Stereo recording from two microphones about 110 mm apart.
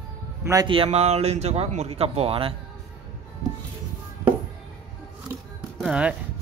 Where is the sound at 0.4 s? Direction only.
25° right (ahead or behind).